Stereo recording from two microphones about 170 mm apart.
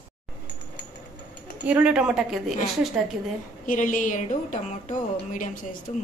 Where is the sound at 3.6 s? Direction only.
50° left (ahead or behind).